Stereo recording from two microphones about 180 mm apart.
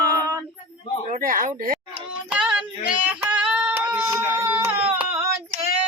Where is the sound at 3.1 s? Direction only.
5° right (ahead or behind).